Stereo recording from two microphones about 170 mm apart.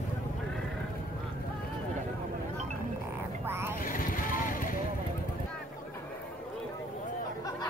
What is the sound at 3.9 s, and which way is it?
Vehicle, 55° left (ahead or behind).